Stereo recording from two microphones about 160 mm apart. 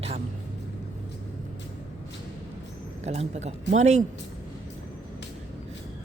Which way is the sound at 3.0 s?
40° right (ahead or behind).